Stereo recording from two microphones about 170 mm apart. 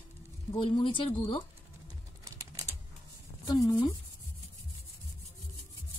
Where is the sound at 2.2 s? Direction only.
20° right (ahead or behind).